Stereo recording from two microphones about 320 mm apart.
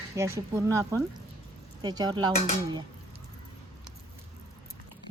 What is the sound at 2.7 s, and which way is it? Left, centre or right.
Dishes, centre.